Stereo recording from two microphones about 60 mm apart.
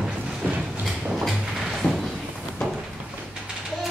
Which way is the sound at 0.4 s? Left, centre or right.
Right.